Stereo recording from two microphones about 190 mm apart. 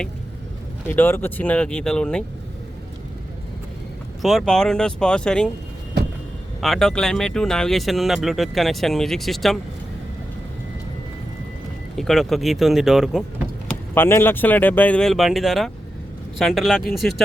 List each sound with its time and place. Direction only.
0.9 s speech: 10° left (ahead or behind)
4.2 s speech: centre (ahead or behind)
6.6 s speech: centre (ahead or behind)
11.9 s speech: centre (ahead or behind)
13.9 s speech: 10° left (ahead or behind)